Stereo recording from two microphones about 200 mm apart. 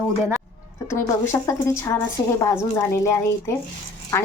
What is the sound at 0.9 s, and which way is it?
A woman's voice, 15° left (ahead or behind).